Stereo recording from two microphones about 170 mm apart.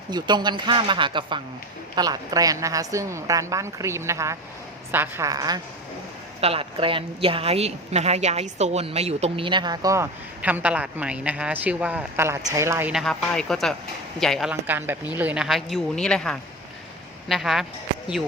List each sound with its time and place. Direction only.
0.1 s a woman's voice: 25° right (ahead or behind)
6.4 s a woman's voice: 35° right (ahead or behind); by 12.9 s 15° right (ahead or behind)
12.9 s speech: centre (ahead or behind)
14.7 s speech: 10° right (ahead or behind)